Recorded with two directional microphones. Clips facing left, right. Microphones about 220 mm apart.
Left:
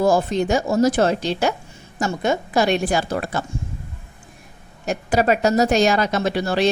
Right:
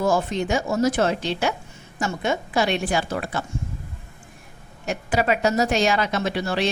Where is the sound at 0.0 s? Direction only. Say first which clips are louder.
Left 4 dB; 35° left (ahead or behind).